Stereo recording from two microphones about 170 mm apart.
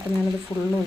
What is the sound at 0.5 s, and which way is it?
Speech, 15° left (ahead or behind).